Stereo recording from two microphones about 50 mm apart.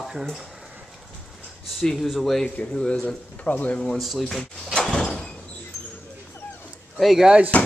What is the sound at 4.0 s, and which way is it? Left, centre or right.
Speech, centre.